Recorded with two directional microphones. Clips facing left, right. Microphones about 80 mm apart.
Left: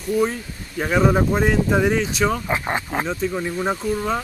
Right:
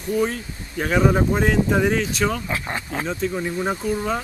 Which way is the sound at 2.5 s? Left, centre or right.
Left.